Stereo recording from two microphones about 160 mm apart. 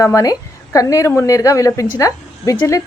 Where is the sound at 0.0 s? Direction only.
20° left (ahead or behind).